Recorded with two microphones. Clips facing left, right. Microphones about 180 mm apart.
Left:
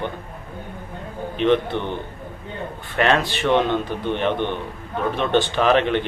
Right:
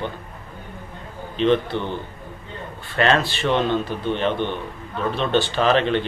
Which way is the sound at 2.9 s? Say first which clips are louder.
Even; 15° left (ahead or behind).